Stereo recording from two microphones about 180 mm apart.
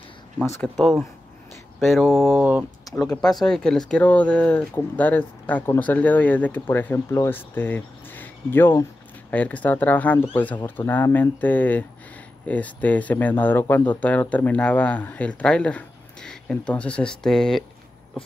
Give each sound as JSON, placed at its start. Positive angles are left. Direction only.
{"t": 0.4, "sound": "speech", "side_deg": 5}
{"t": 2.9, "sound": "a sound", "side_deg": 20}
{"t": 3.3, "sound": "speech", "side_deg": 5}